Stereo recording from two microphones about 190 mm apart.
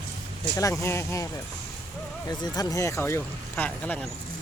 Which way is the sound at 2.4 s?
20° left (ahead or behind).